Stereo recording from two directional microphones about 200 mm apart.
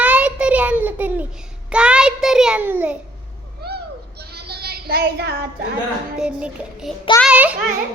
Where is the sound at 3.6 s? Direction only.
55° right (ahead or behind).